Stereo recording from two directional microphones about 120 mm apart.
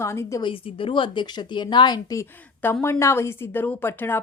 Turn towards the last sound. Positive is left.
turn(degrees=20)  # may be behind; listen again after turning